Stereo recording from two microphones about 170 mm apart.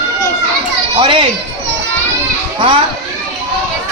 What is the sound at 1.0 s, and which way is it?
Speech, 30° right (ahead or behind).